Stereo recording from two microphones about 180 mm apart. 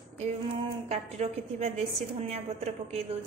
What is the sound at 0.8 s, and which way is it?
A woman's voice, 35° right (ahead or behind).